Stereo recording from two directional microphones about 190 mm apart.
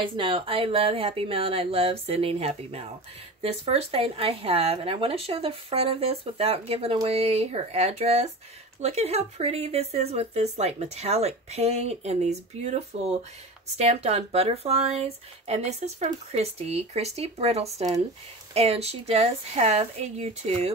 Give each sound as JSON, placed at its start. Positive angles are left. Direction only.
{"t": 0.0, "sound": "speech", "side_deg": -25}